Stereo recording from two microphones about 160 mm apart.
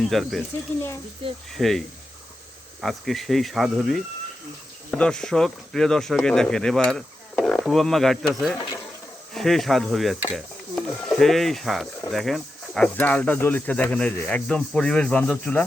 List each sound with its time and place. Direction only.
0.1 s speech: centre (ahead or behind)
1.2 s speech: 35° right (ahead or behind)
1.5 s speech: centre (ahead or behind)
2.8 s speech: centre (ahead or behind)